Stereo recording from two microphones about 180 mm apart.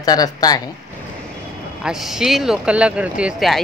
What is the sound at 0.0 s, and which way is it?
Speech, 20° left (ahead or behind).